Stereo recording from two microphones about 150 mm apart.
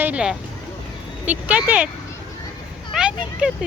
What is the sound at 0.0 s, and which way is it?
Speech, 5° right (ahead or behind).